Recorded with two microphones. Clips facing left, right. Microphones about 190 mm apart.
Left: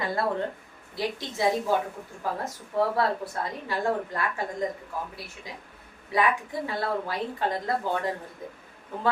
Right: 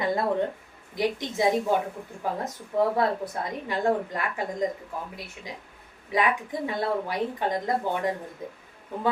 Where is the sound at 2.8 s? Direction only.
20° right (ahead or behind).